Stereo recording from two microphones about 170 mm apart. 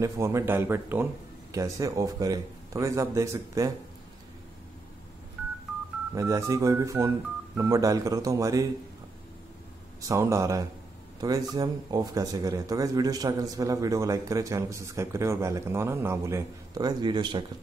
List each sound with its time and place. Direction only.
0.0 s speech: 15° right (ahead or behind)
6.1 s speech: 20° right (ahead or behind)
10.0 s speech: 20° right (ahead or behind)